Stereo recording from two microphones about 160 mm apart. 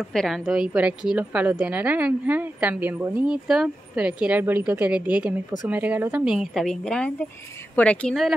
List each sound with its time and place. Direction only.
0.1 s a woman's voice: centre (ahead or behind)